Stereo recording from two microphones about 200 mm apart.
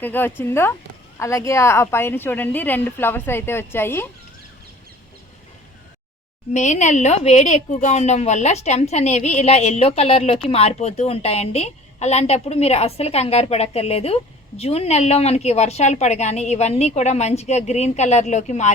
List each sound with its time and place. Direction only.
0.0 s a woman's voice: 10° left (ahead or behind)
6.5 s a woman's voice: 35° left (ahead or behind)